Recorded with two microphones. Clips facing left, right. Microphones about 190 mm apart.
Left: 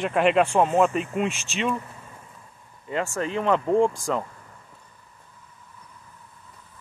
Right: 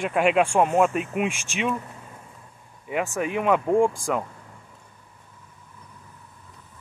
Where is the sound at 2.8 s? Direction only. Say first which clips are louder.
Right 1 dB; 15° right (ahead or behind).